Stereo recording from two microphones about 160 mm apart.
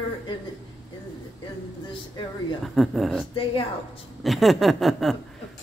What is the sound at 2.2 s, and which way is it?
Speech, 30° left (ahead or behind).